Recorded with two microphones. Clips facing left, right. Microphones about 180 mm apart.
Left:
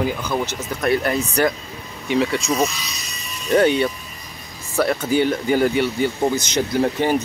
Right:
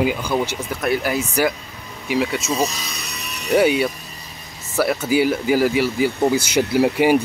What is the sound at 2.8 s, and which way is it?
Electric shaver, 55° right (ahead or behind).